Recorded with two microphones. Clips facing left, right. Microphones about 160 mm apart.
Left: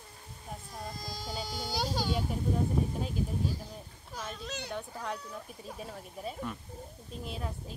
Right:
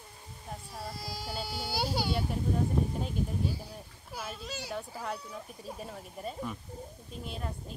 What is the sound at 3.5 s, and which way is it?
Speech, 10° right (ahead or behind).